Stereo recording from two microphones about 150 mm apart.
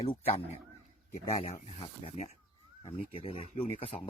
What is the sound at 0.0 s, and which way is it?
A man's voice, 40° left (ahead or behind).